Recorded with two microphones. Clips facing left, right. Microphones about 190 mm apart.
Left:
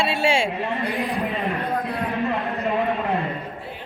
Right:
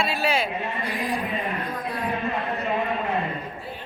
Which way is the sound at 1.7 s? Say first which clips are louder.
Left 5 dB; 65° left (ahead or behind).